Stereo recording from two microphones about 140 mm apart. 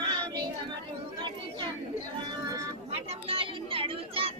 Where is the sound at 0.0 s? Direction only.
35° right (ahead or behind).